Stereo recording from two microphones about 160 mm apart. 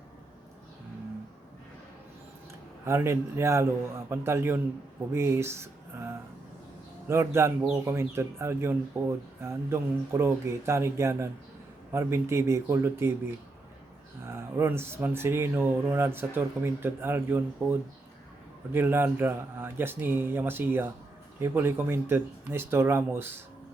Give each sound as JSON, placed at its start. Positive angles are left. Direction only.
{"t": 2.8, "sound": "speech", "side_deg": -15}
{"t": 7.1, "sound": "speech", "side_deg": -15}
{"t": 14.3, "sound": "speech", "side_deg": -15}